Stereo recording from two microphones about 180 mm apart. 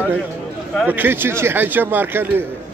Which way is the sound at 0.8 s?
10° right (ahead or behind).